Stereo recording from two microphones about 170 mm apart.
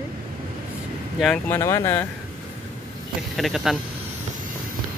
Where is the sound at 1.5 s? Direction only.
15° left (ahead or behind).